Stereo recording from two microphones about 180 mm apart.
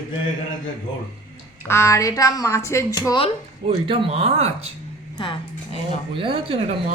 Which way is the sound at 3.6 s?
30° right (ahead or behind).